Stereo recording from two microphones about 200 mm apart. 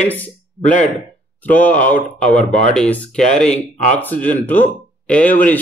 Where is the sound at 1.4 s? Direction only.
10° left (ahead or behind).